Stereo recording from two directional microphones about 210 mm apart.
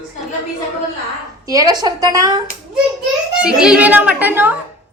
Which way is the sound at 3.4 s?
5° right (ahead or behind).